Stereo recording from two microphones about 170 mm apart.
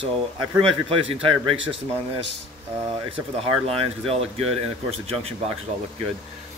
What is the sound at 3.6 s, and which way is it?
Speech, 35° right (ahead or behind).